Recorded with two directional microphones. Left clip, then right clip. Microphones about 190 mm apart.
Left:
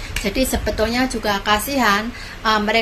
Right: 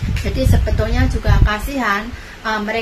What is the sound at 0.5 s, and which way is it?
Speech, 40° left (ahead or behind).